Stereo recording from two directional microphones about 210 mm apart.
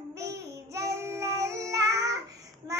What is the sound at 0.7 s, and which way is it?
Child singing, 15° right (ahead or behind).